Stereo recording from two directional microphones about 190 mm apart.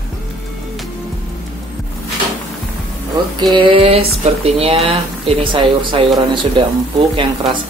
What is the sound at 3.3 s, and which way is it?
Speech, 25° right (ahead or behind).